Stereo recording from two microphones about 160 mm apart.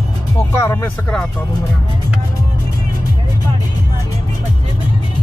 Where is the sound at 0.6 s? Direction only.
15° left (ahead or behind).